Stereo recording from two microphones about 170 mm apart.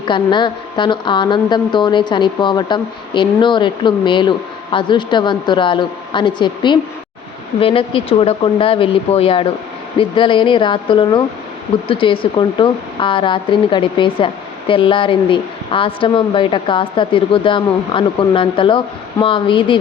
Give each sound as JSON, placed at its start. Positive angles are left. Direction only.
{"t": 0.0, "sound": "a woman's voice", "side_deg": 30}